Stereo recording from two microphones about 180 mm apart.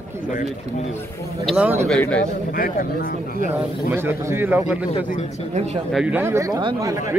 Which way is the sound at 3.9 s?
10° right (ahead or behind).